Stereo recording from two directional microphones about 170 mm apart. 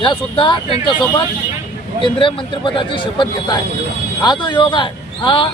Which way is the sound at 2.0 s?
30° left (ahead or behind).